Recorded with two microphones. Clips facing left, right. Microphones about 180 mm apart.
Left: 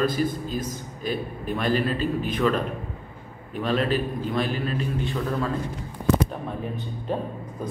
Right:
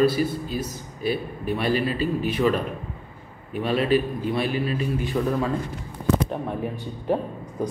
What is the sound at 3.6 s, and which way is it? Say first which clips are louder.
A man's voice: right 3 dB; 10° right (ahead or behind).